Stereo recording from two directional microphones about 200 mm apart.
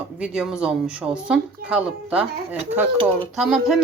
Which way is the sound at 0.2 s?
5° right (ahead or behind).